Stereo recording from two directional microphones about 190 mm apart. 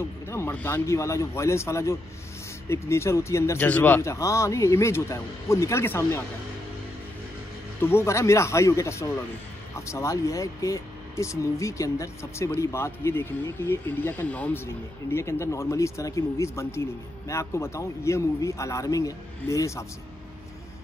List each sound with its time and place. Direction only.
0.0 s speech: 15° left (ahead or behind)
7.8 s speech: 15° left (ahead or behind)